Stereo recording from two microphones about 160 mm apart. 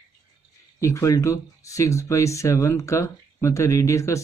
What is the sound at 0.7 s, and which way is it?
Speech, 20° left (ahead or behind).